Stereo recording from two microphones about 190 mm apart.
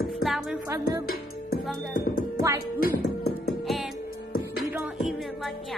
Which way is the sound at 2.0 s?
50° left (ahead or behind).